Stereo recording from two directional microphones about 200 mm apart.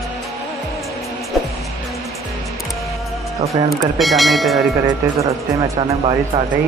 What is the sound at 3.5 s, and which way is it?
Speech, centre (ahead or behind).